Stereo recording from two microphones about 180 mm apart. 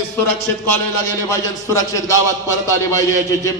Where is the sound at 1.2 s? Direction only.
20° left (ahead or behind).